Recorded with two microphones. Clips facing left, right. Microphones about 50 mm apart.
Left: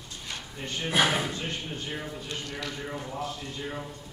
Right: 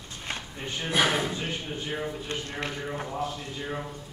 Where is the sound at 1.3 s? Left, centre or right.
Centre.